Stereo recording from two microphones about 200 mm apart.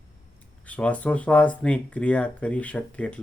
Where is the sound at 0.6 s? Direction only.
5° left (ahead or behind).